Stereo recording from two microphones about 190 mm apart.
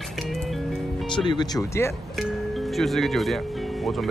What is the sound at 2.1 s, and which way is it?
Speech, centre (ahead or behind).